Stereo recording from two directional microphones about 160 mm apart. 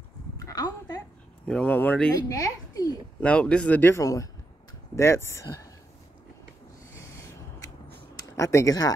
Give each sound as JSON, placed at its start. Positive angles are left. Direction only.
{"t": 0.4, "sound": "a sound", "side_deg": 20}
{"t": 1.5, "sound": "speech", "side_deg": 10}
{"t": 2.2, "sound": "a woman's voice", "side_deg": 20}
{"t": 3.2, "sound": "speech", "side_deg": 5}
{"t": 7.0, "sound": "a sound", "side_deg": 20}
{"t": 8.2, "sound": "speech", "side_deg": 20}